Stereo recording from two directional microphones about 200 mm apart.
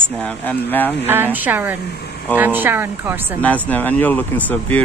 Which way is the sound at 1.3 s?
10° right (ahead or behind).